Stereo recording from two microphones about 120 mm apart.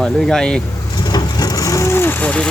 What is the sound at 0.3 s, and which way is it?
Speech, 5° left (ahead or behind).